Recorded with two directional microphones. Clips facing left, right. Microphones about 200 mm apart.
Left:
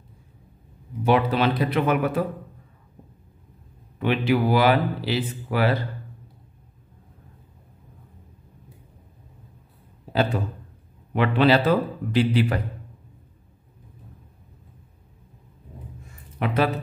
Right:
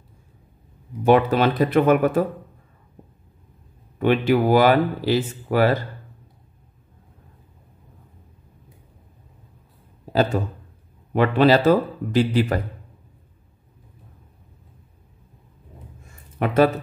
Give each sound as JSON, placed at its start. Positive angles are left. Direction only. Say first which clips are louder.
{"t": 1.0, "sound": "speech", "louder": "right 4 dB", "side_deg": -50}
{"t": 4.0, "sound": "speech", "louder": "right 3 dB", "side_deg": -45}
{"t": 11.1, "sound": "speech", "louder": "right 3 dB", "side_deg": -40}
{"t": 16.3, "sound": "speech", "louder": "right 5 dB", "side_deg": -45}